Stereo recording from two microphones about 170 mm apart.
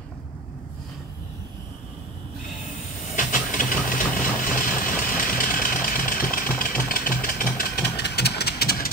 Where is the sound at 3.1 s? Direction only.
50° left (ahead or behind).